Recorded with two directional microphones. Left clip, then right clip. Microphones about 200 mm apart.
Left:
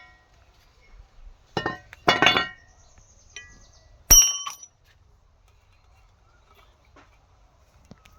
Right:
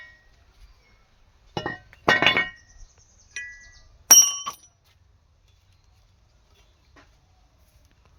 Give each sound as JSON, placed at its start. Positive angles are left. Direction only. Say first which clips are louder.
{"t": 1.5, "sound": "chink", "louder": "left 2 dB", "side_deg": 45}
{"t": 4.1, "sound": "bicycle bell", "louder": "right 1 dB", "side_deg": 25}